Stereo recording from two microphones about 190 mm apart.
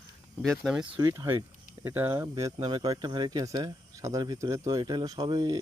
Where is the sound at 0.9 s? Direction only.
20° right (ahead or behind).